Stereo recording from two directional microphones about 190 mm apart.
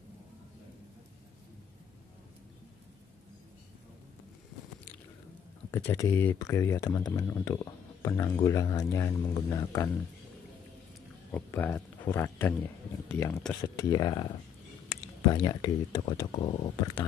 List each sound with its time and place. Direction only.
5.7 s speech: 10° left (ahead or behind)
11.3 s speech: 10° left (ahead or behind)